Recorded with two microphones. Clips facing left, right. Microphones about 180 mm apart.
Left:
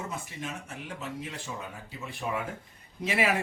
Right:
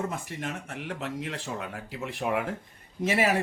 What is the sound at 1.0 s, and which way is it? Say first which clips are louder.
Speech: right 4 dB; 90° right.